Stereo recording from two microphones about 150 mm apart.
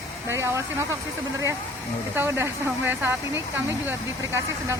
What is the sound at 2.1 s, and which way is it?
Speech, 15° right (ahead or behind).